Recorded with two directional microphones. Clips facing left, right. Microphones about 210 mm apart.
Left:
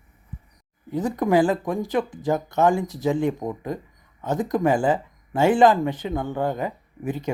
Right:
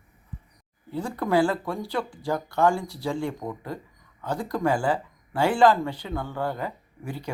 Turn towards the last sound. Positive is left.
turn(degrees=20)  # may be behind; listen again after turning